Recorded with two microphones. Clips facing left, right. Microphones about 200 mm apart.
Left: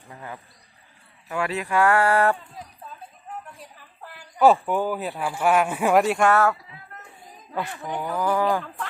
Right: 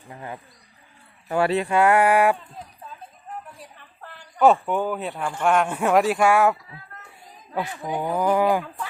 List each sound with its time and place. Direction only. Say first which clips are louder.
0.1 s speech: right 2 dB; 20° right (ahead or behind)
1.3 s speech: right 5 dB; 35° right (ahead or behind); by 2.3 s 15° right (ahead or behind)
3.6 s speech: even; 5° left (ahead or behind); by 8.7 s 15° right (ahead or behind)